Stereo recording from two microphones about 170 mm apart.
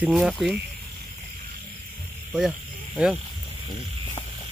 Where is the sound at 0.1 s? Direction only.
Centre (ahead or behind).